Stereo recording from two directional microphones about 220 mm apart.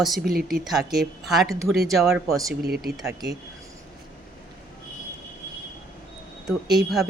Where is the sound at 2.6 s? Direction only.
45° right (ahead or behind).